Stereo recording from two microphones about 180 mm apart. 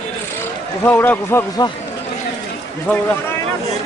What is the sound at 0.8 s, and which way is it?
Speech, 10° left (ahead or behind).